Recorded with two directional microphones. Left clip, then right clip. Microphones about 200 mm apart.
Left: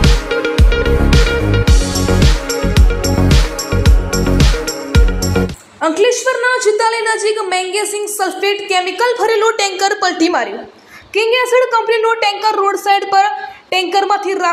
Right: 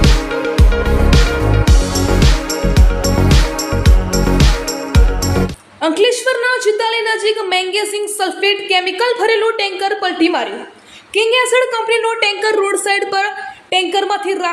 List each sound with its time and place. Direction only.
0.0 s music: centre (ahead or behind)
5.8 s a sound: 15° right (ahead or behind)
6.7 s a sound: 5° left (ahead or behind)
7.3 s a woman's voice: centre (ahead or behind)
8.7 s a woman's voice: 20° right (ahead or behind)
9.1 s a woman's voice: 5° right (ahead or behind)